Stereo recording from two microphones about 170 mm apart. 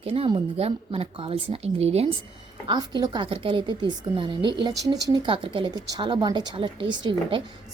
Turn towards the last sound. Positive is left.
turn(degrees=-30)  # may be behind; listen again after turning